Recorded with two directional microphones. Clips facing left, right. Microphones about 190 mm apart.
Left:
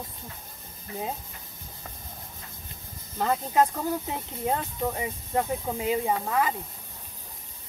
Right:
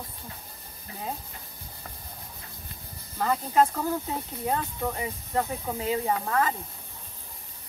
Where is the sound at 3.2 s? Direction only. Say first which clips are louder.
Even; 20° left (ahead or behind).